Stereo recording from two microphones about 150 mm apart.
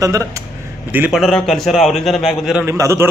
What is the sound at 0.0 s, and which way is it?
Speech, 20° right (ahead or behind).